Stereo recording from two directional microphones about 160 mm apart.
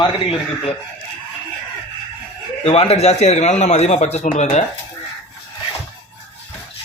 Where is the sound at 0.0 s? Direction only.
35° left (ahead or behind).